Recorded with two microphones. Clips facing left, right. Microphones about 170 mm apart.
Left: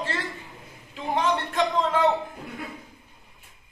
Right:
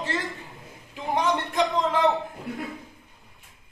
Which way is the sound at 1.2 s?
15° right (ahead or behind).